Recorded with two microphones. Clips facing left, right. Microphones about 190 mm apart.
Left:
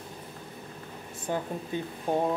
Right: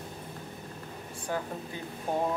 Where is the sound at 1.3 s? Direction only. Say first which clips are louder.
Left 2 dB; 20° left (ahead or behind).